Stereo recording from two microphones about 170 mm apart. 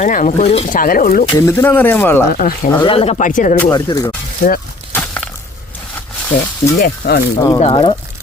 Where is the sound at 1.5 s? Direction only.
10° left (ahead or behind).